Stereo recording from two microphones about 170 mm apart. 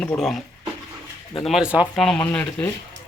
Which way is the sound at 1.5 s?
5° right (ahead or behind).